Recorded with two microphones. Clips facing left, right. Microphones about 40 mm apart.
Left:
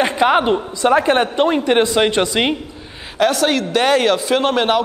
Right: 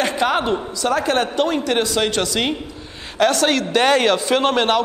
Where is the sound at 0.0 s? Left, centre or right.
Centre.